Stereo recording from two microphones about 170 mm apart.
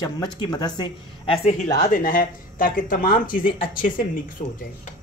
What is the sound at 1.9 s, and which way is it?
Speech, 55° left (ahead or behind).